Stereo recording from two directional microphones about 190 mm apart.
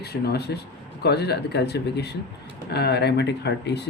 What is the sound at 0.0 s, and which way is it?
Speech, 60° left (ahead or behind).